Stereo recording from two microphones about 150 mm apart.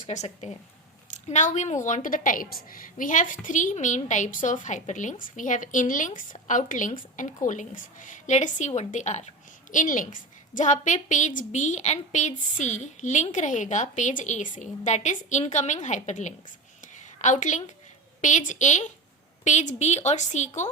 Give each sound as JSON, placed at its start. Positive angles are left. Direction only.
{"t": 0.0, "sound": "a woman's voice", "side_deg": 50}